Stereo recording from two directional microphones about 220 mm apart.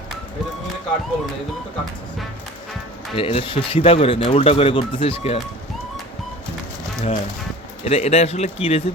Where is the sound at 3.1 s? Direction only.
25° left (ahead or behind).